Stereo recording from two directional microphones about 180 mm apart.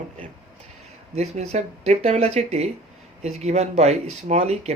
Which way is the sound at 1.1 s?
35° right (ahead or behind).